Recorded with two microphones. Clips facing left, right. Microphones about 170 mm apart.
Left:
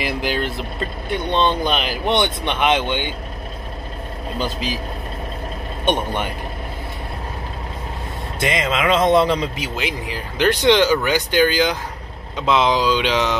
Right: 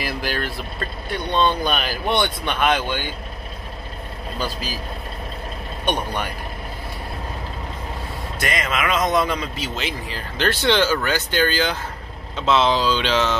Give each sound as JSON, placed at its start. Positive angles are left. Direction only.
{"t": 0.0, "sound": "speech", "side_deg": 20}
{"t": 4.4, "sound": "speech", "side_deg": 20}
{"t": 5.9, "sound": "speech", "side_deg": 20}
{"t": 8.4, "sound": "speech", "side_deg": 25}
{"t": 9.6, "sound": "speech", "side_deg": 15}